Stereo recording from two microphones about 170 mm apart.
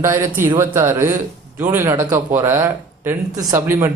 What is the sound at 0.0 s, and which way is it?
Speech, 15° right (ahead or behind).